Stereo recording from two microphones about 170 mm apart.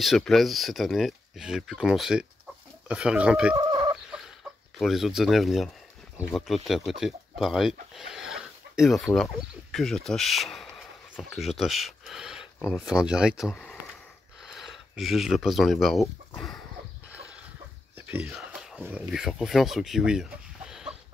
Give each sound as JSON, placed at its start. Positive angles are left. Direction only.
{"t": 0.0, "sound": "speech", "side_deg": 0}
{"t": 3.5, "sound": "fowl", "side_deg": -25}
{"t": 4.7, "sound": "speech", "side_deg": 0}
{"t": 17.9, "sound": "a sound", "side_deg": -10}
{"t": 19.0, "sound": "speech", "side_deg": -5}